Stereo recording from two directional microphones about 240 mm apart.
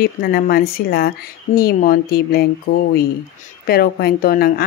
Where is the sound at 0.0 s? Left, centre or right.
Left.